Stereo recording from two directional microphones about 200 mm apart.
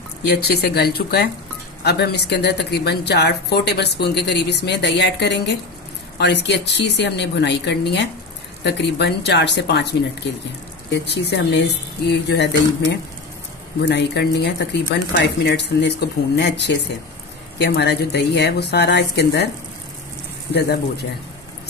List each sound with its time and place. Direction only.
0.2 s a woman's voice: 55° left (ahead or behind)